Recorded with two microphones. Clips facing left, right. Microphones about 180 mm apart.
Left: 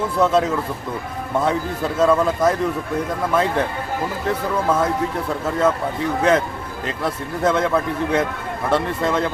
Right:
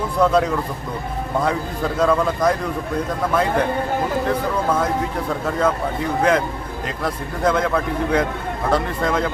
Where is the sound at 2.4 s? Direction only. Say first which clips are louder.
Even; 25° left (ahead or behind).